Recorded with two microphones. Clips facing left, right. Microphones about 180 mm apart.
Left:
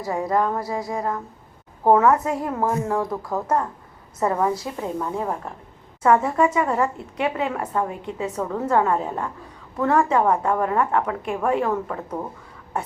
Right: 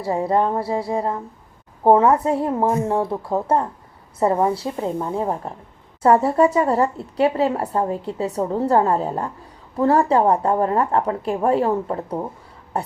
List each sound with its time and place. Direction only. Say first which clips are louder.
0.0 s a woman's voice: right 3 dB; 30° right (ahead or behind)